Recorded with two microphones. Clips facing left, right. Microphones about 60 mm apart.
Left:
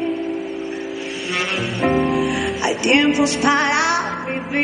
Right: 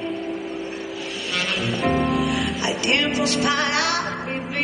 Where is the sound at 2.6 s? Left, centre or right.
Left.